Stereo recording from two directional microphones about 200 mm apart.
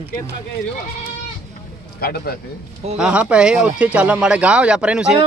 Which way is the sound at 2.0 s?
50° left (ahead or behind).